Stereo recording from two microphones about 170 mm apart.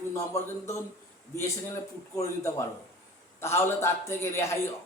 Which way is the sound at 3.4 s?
15° left (ahead or behind).